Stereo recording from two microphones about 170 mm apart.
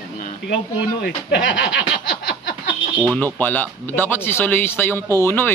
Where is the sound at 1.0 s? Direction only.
85° left.